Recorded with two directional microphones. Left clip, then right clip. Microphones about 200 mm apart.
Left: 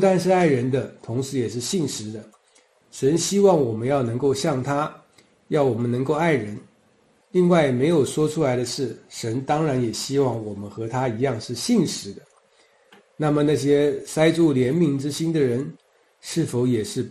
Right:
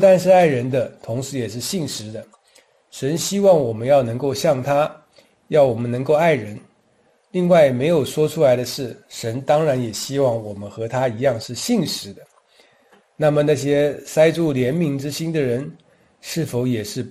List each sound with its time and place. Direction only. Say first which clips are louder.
0.0 s a man's voice: right 6 dB; 35° right (ahead or behind)
3.0 s a man's voice: left 2 dB; 35° right (ahead or behind)
13.2 s a man's voice: right 4 dB; 35° right (ahead or behind)